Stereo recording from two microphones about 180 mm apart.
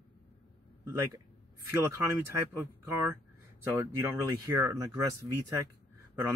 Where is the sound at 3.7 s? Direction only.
15° right (ahead or behind).